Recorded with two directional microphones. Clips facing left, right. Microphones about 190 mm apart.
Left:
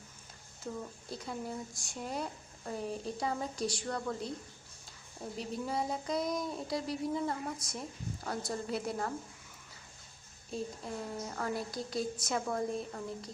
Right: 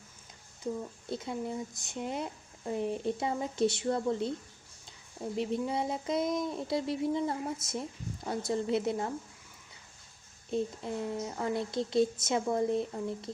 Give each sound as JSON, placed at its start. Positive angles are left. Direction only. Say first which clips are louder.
{"t": 1.2, "sound": "speech", "louder": "right 2 dB", "side_deg": -20}
{"t": 5.4, "sound": "speech", "louder": "right 4 dB", "side_deg": -25}
{"t": 10.5, "sound": "speech", "louder": "right 6 dB", "side_deg": -20}